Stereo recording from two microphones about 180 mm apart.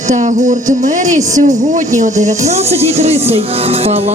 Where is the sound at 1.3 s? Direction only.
45° right (ahead or behind).